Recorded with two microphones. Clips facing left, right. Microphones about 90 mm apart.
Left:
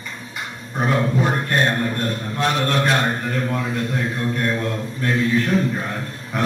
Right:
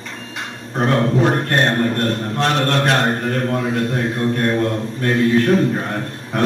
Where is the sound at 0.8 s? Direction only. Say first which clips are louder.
Right 4 dB; 60° right (ahead or behind).